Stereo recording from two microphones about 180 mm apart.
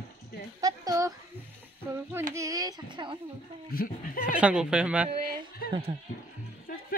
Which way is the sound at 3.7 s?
55° left (ahead or behind).